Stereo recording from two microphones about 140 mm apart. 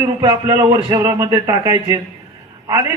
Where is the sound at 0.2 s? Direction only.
30° right (ahead or behind).